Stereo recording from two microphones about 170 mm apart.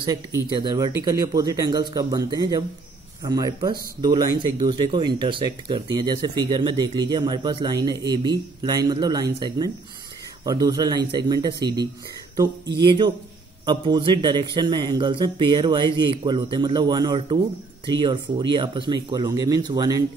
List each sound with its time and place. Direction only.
0.1 s speech: 20° right (ahead or behind)
12.7 s speech: 25° right (ahead or behind)